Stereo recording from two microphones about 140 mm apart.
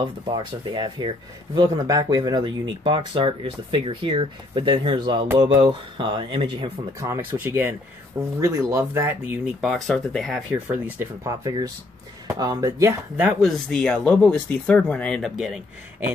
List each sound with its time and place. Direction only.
0.0 s speech: 35° right (ahead or behind); by 9.4 s 15° right (ahead or behind)
9.6 s speech: centre (ahead or behind)
10.5 s speech: 15° right (ahead or behind)
13.2 s speech: centre (ahead or behind)